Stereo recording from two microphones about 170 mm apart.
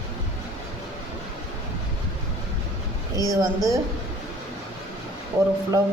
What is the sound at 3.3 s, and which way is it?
Speech, 20° right (ahead or behind).